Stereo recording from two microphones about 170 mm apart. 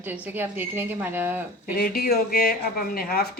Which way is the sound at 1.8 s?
65° left (ahead or behind).